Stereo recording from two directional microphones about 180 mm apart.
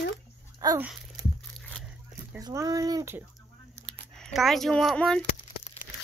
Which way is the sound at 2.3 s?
20° right (ahead or behind).